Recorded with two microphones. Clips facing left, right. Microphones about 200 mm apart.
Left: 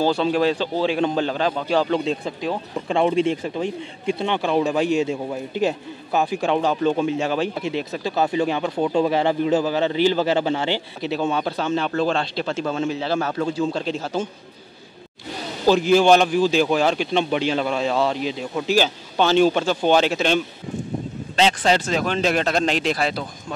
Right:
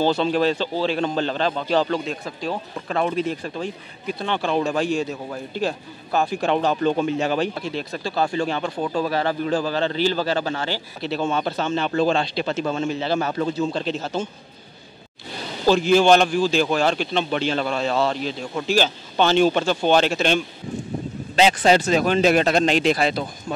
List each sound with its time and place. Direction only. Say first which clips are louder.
0.0 s a man's voice: even; 10° left (ahead or behind); by 4.3 s 25° left (ahead or behind)
4.3 s speech: even; 15° left (ahead or behind)
6.2 s a man's voice: even; centre (ahead or behind)
7.5 s a man's voice: left 3 dB; 15° left (ahead or behind)
11.2 s a man's voice: even; centre (ahead or behind)
13.5 s speech: even; 10° left (ahead or behind)
15.9 s speech: even; 5° left (ahead or behind)
21.4 s a man's voice: right 2 dB; 10° right (ahead or behind)